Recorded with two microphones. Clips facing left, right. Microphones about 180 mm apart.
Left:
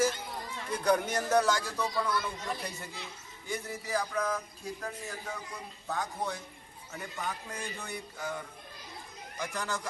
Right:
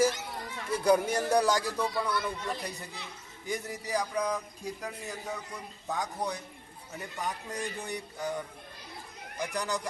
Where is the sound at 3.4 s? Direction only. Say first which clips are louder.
Right 2 dB; 15° right (ahead or behind).